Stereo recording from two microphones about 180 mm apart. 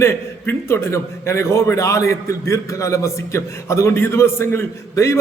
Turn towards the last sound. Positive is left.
turn(degrees=15)  # may be behind; listen again after turning